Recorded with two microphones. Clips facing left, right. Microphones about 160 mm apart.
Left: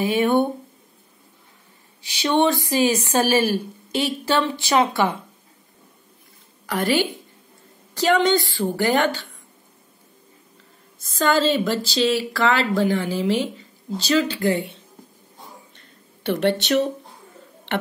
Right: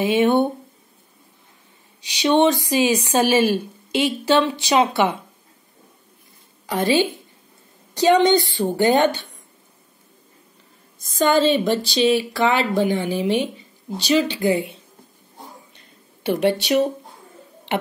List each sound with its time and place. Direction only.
0.0 s speech: 20° right (ahead or behind)
2.0 s a woman's voice: 15° right (ahead or behind)
6.6 s a woman's voice: 15° right (ahead or behind)
11.1 s a woman's voice: 20° right (ahead or behind)
14.5 s speech: 5° right (ahead or behind)
15.7 s a sound: 10° right (ahead or behind)